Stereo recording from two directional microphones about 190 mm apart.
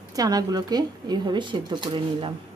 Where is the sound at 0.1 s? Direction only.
20° right (ahead or behind).